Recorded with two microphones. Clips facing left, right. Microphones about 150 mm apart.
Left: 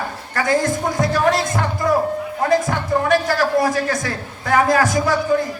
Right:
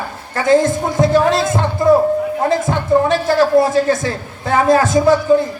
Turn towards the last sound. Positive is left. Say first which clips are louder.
# right 6 dB
turn(degrees=-20)  # may be behind; listen again after turning